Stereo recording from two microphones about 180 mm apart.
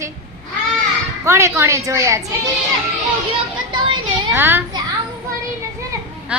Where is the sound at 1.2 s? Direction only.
15° right (ahead or behind).